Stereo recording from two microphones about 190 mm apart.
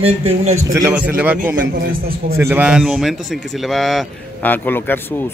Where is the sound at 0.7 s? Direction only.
15° right (ahead or behind).